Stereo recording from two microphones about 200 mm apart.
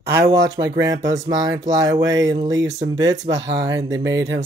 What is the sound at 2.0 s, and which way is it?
Speech, 65° right (ahead or behind).